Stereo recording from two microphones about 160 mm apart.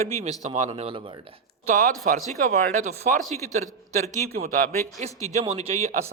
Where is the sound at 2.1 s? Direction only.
60° right (ahead or behind).